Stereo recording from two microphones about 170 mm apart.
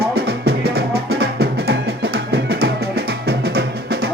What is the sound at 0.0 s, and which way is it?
Music, 65° right (ahead or behind).